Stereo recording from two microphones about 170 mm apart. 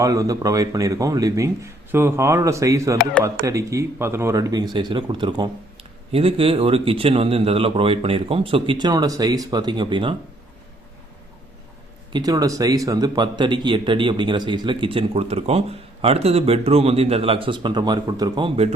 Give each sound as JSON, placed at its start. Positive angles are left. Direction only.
{"t": 0.0, "sound": "speech", "side_deg": -20}
{"t": 12.1, "sound": "speech", "side_deg": -20}